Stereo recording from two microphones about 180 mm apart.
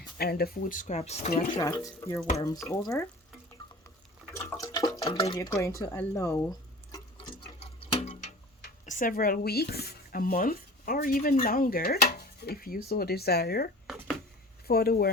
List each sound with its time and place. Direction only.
0.2 s speech: 60° left (ahead or behind); by 1.3 s 35° left (ahead or behind)
1.5 s speech: 15° left (ahead or behind)
4.4 s water: 15° left (ahead or behind)
5.4 s speech: 15° left (ahead or behind)
7.2 s water: 35° left (ahead or behind)
8.9 s speech: 50° left (ahead or behind)
13.8 s a sound: centre (ahead or behind)
14.7 s speech: 60° left (ahead or behind)